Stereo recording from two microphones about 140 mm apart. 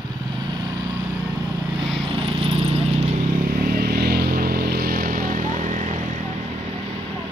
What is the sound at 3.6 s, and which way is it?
Vehicle, 90° right.